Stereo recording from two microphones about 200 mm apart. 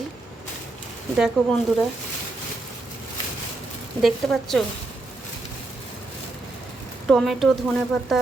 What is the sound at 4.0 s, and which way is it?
Speech, centre (ahead or behind).